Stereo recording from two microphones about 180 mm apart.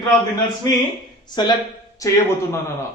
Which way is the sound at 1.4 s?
25° left (ahead or behind).